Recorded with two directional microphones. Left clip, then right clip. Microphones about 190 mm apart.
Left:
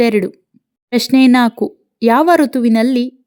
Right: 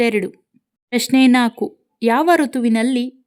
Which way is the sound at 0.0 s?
25° left (ahead or behind).